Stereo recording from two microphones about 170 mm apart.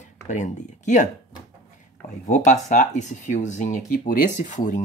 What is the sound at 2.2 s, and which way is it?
Speech, 45° left (ahead or behind).